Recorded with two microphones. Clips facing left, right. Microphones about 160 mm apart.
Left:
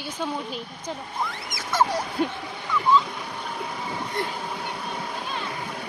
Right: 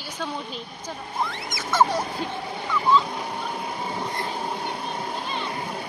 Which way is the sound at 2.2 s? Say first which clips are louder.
Left 5 dB; 55° left (ahead or behind).